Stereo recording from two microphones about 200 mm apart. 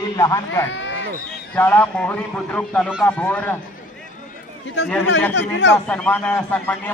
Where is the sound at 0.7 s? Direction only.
65° left (ahead or behind).